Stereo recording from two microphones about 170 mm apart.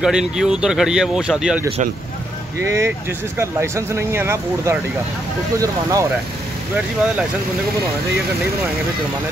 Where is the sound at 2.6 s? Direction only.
15° right (ahead or behind).